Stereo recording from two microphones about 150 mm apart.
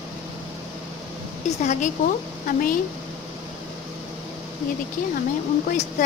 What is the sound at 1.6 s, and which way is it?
Speech, 50° left (ahead or behind).